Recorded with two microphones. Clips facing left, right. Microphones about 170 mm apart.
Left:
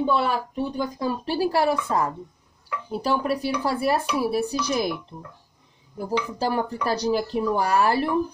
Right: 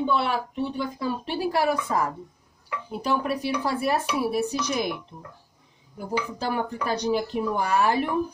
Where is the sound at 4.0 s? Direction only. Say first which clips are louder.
Left 2 dB; 5° right (ahead or behind).